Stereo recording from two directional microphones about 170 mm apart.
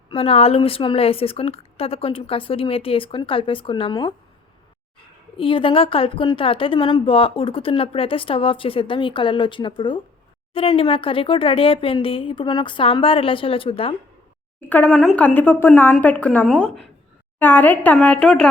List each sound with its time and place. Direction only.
0.1 s a woman's voice: 35° left (ahead or behind)
5.4 s a woman's voice: 30° left (ahead or behind)
14.7 s speech: 10° left (ahead or behind)